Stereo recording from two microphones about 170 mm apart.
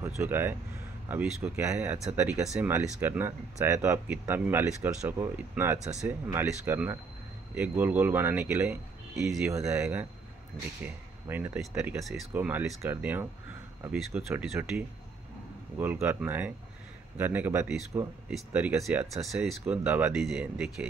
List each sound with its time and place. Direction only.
0.2 s speech: 15° right (ahead or behind)
9.5 s speech: 15° right (ahead or behind)
13.9 s speech: centre (ahead or behind)